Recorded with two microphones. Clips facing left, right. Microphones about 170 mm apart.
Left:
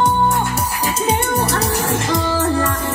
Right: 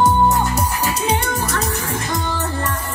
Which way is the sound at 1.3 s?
65° left (ahead or behind).